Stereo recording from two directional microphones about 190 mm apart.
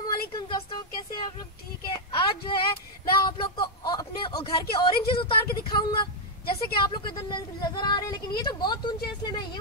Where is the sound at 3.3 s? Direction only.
25° left (ahead or behind).